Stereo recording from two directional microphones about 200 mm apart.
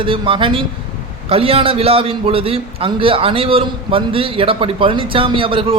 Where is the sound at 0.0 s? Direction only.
25° right (ahead or behind).